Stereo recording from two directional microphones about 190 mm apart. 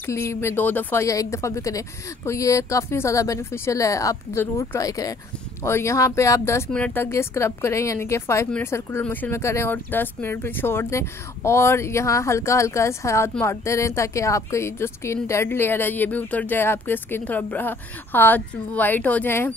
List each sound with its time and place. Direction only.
0.0 s speech: 15° left (ahead or behind)